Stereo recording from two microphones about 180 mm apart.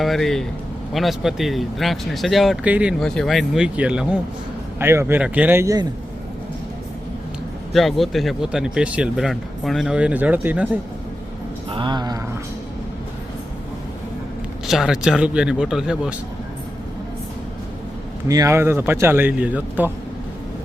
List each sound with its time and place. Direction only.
0.0 s speech: centre (ahead or behind); by 5.9 s 20° right (ahead or behind)
7.7 s speech: centre (ahead or behind)
11.7 s speech: 25° right (ahead or behind)
14.7 s speech: centre (ahead or behind)
18.3 s speech: 20° right (ahead or behind)